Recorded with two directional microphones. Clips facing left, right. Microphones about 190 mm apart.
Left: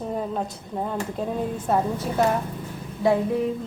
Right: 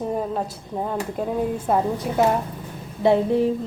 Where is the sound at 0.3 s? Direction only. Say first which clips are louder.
Right 1 dB; 5° right (ahead or behind).